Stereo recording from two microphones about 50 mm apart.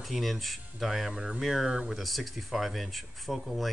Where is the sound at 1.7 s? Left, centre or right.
Centre.